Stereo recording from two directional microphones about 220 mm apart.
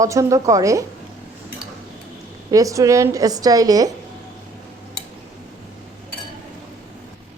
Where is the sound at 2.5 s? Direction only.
15° right (ahead or behind).